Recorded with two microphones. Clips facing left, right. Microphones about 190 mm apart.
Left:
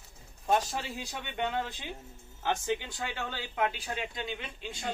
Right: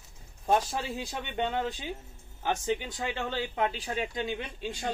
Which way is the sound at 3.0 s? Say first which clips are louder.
Right 5 dB; 20° right (ahead or behind).